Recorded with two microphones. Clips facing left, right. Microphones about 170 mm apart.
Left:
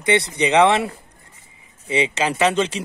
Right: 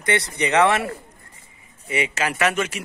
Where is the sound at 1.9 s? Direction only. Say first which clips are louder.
Left 4 dB; 25° left (ahead or behind).